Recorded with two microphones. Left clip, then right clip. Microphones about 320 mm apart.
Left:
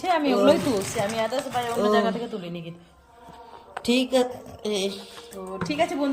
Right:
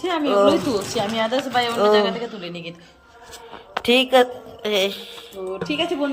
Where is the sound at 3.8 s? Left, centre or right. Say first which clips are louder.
Right 7 dB; centre.